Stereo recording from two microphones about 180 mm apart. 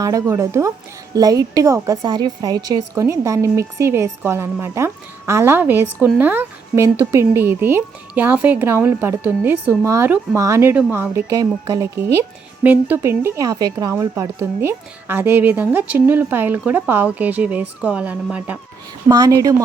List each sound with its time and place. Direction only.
0.0 s speech: 15° right (ahead or behind)
19.0 s speech: 20° right (ahead or behind)